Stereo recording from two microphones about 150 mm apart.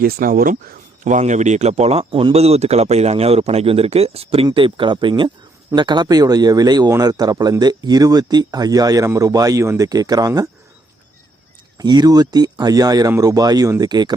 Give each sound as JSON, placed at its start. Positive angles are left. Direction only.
{"t": 0.0, "sound": "speech", "side_deg": -75}
{"t": 11.8, "sound": "speech", "side_deg": -25}